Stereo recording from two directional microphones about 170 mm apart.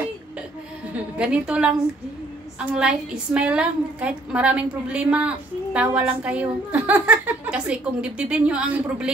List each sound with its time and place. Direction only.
1.1 s a woman's voice: 5° right (ahead or behind)